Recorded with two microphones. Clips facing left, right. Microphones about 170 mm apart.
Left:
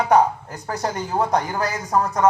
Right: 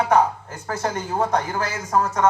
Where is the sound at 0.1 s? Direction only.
35° left (ahead or behind).